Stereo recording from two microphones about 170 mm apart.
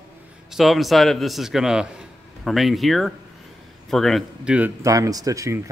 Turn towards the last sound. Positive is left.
turn(degrees=-20)  # may be behind; listen again after turning